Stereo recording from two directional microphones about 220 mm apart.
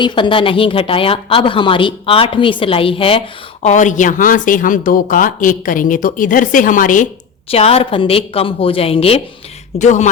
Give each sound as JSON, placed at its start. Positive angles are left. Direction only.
{"t": 0.0, "sound": "a woman's voice", "side_deg": 20}